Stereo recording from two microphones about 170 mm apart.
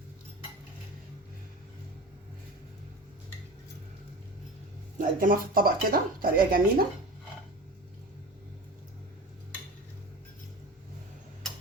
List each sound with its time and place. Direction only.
4.9 s speech: 55° right (ahead or behind)